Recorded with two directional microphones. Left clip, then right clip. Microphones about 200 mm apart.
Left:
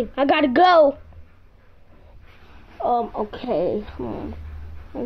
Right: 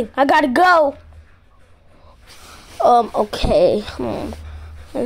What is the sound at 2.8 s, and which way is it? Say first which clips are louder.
A woman's voice: right 8 dB; 40° right (ahead or behind).